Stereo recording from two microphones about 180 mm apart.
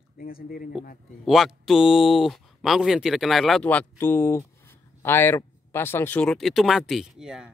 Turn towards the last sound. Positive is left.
turn(degrees=-5)  # may be behind; listen again after turning